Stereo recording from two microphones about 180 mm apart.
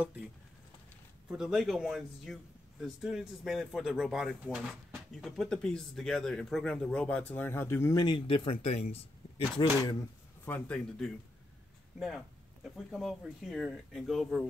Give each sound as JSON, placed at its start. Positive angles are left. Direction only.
{"t": 1.3, "sound": "speech", "side_deg": 0}
{"t": 9.6, "sound": "speech", "side_deg": 25}
{"t": 10.4, "sound": "speech", "side_deg": 10}
{"t": 12.6, "sound": "speech", "side_deg": 0}